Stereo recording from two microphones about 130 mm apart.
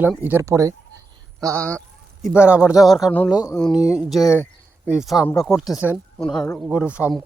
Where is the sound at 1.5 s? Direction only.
10° left (ahead or behind).